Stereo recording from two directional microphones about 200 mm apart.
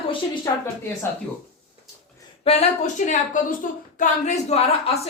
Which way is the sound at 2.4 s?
30° left (ahead or behind).